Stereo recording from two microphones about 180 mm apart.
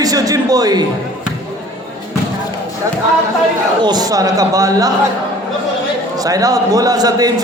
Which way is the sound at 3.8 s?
25° right (ahead or behind).